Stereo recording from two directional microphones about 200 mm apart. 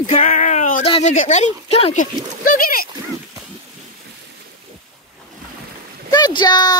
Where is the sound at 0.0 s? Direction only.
40° left (ahead or behind).